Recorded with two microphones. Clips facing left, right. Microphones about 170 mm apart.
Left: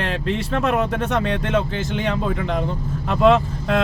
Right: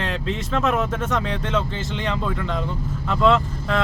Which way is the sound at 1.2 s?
65° left (ahead or behind).